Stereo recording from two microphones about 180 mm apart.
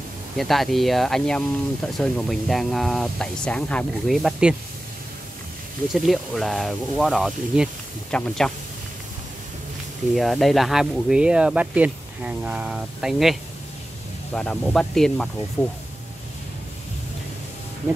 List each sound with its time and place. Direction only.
0.4 s speech: centre (ahead or behind)
5.9 s speech: centre (ahead or behind)
10.1 s speech: centre (ahead or behind)